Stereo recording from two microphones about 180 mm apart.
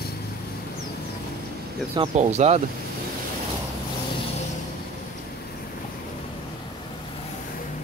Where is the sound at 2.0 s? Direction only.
40° right (ahead or behind).